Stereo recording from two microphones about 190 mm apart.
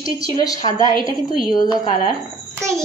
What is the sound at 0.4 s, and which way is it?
Speech, 20° left (ahead or behind).